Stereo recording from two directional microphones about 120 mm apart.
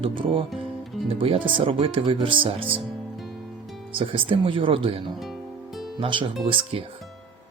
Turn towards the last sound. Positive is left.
turn(degrees=-45)  # may be behind; listen again after turning